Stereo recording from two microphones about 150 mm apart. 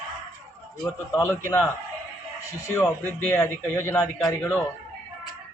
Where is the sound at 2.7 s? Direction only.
15° left (ahead or behind).